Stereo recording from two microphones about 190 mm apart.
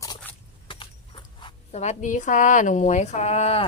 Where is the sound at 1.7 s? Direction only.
35° left (ahead or behind).